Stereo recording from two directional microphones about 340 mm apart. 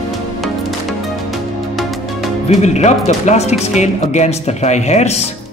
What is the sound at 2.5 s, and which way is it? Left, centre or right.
Speech, centre.